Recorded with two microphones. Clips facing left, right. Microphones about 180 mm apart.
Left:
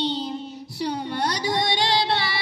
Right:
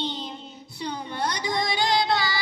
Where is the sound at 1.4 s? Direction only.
35° left (ahead or behind).